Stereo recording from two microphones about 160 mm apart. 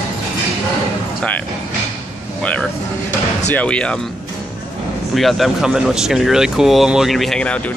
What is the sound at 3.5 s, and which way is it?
Speech, 5° left (ahead or behind).